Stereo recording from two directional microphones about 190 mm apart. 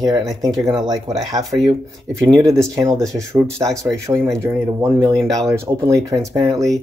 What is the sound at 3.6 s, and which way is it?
Speech, 5° left (ahead or behind).